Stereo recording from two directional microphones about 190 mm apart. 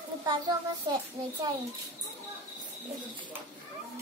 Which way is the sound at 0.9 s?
25° right (ahead or behind).